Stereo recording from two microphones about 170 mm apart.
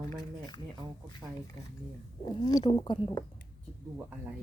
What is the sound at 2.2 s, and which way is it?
Speech, 25° left (ahead or behind).